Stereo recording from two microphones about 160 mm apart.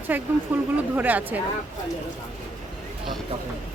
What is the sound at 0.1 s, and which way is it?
A woman's voice, 10° right (ahead or behind).